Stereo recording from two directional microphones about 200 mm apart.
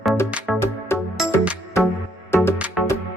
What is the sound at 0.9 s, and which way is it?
Music, 10° left (ahead or behind).